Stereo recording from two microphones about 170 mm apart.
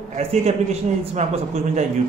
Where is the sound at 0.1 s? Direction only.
40° right (ahead or behind).